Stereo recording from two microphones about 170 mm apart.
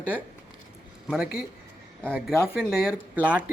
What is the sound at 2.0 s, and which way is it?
Speech, 5° right (ahead or behind).